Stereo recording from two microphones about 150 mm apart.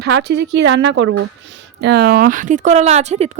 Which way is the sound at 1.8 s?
90° right.